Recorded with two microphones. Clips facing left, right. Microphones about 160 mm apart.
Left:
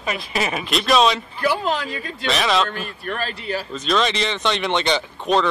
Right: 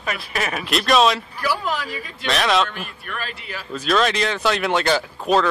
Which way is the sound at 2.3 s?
Centre (ahead or behind).